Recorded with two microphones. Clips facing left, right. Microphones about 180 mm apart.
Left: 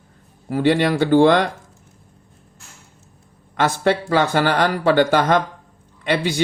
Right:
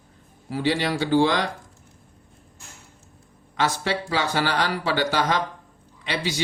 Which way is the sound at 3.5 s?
55° left (ahead or behind).